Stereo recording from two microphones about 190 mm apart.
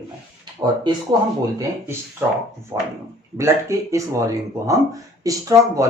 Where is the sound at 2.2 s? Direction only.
10° right (ahead or behind).